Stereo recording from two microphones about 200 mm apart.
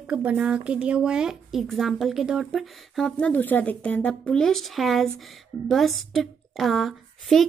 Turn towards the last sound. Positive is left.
turn(degrees=0)  # may be behind; listen again after turning